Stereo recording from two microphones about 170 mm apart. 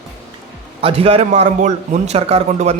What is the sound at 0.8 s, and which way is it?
A man's voice, 35° right (ahead or behind).